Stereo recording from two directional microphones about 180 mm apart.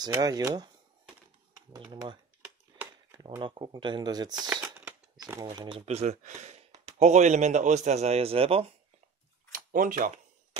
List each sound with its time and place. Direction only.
0.0 s speech: 20° right (ahead or behind)
1.7 s speech: 25° right (ahead or behind)
4.7 s a sound: 10° right (ahead or behind)
5.2 s a man's voice: 20° right (ahead or behind)
9.5 s speech: 50° right (ahead or behind)